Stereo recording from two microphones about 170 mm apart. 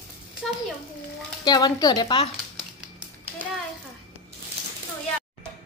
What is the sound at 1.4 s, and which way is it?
Speech, 25° left (ahead or behind).